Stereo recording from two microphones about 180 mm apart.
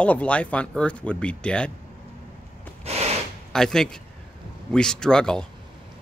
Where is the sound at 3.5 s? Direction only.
5° left (ahead or behind).